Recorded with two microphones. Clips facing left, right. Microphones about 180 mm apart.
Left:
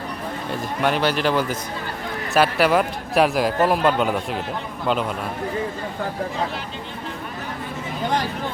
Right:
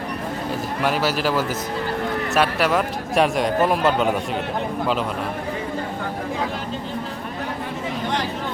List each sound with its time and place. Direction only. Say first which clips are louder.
0.8 s a man's voice: left 2 dB; 5° right (ahead or behind)